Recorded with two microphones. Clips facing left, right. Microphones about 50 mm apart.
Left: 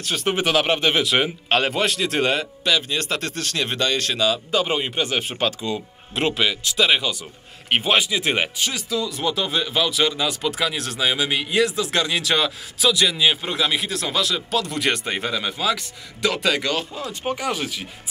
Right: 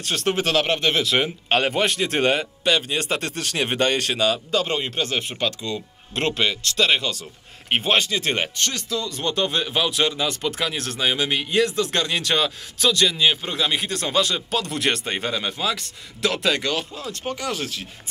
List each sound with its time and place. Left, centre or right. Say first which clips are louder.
0.2 s speech: left 1 dB; centre
1.5 s a man's voice: right 1 dB; centre
3.5 s speech: right 2 dB; right
4.0 s speech: even; centre
4.5 s speech: left 1 dB; centre
17.1 s speech: left 3 dB; centre